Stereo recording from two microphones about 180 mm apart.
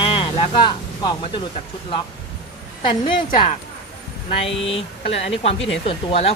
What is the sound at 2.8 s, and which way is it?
Speech, 30° left (ahead or behind).